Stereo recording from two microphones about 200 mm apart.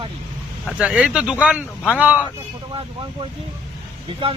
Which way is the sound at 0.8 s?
5° right (ahead or behind).